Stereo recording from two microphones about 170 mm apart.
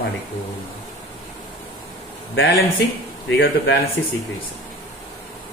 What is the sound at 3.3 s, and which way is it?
Speech, 90° left.